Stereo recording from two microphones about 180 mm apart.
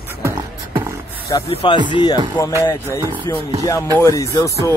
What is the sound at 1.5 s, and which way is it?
Speech, 25° left (ahead or behind).